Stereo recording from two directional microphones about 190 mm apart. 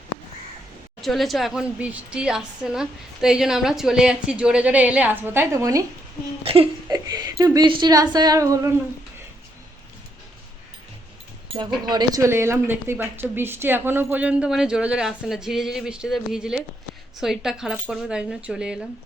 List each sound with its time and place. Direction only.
1.0 s a woman's voice: centre (ahead or behind); by 5.8 s 15° right (ahead or behind)
6.4 s speech: 30° right (ahead or behind)
6.8 s speech: 20° right (ahead or behind)
11.5 s a woman's voice: 20° right (ahead or behind); by 18.9 s 5° right (ahead or behind)